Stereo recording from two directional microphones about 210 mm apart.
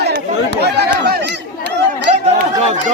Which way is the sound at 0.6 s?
50° right (ahead or behind).